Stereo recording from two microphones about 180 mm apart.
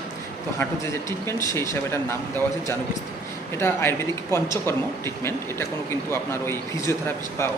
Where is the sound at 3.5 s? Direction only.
15° left (ahead or behind).